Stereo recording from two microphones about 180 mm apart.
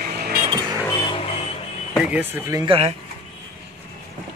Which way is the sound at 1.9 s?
5° right (ahead or behind).